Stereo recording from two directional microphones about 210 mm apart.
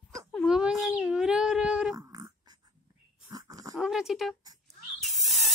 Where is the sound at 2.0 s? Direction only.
15° right (ahead or behind).